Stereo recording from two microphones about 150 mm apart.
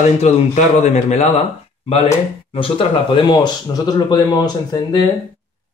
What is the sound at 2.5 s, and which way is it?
Speech, 35° left (ahead or behind).